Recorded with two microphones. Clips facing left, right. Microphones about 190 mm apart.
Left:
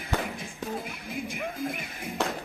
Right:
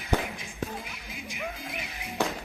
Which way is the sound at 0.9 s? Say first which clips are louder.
Left 7 dB; 55° left (ahead or behind).